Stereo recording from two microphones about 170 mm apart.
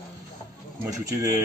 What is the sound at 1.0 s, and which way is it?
Speech, 20° right (ahead or behind).